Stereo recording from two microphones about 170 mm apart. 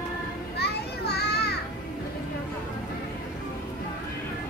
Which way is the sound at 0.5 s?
70° left (ahead or behind).